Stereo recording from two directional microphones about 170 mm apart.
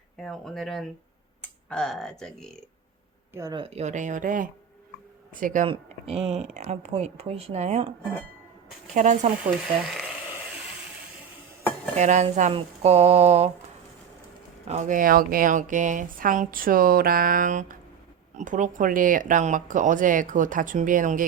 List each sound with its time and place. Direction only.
0.2 s speech: centre (ahead or behind)
3.3 s speech: 20° right (ahead or behind)
3.6 s speech: 40° right (ahead or behind)
5.6 s speech: 35° right (ahead or behind)
9.0 s speech: 45° right (ahead or behind)
11.9 s speech: 45° right (ahead or behind)
14.7 s speech: 45° right (ahead or behind)